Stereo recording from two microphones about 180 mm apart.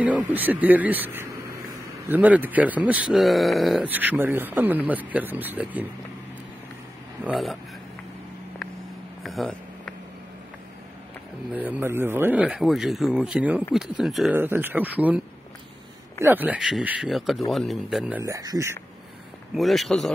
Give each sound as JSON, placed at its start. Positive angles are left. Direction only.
{"t": 0.3, "sound": "speech", "side_deg": -10}
{"t": 7.2, "sound": "speech", "side_deg": 0}
{"t": 9.2, "sound": "a sound", "side_deg": 0}
{"t": 11.5, "sound": "speech", "side_deg": -10}
{"t": 18.3, "sound": "speech", "side_deg": -20}
{"t": 19.5, "sound": "speech", "side_deg": 0}